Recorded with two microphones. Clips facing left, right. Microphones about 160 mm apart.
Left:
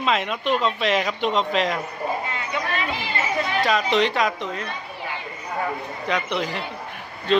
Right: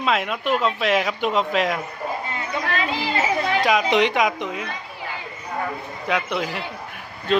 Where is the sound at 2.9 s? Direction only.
90° right.